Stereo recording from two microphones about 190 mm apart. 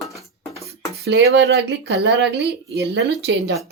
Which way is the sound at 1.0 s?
60° right (ahead or behind).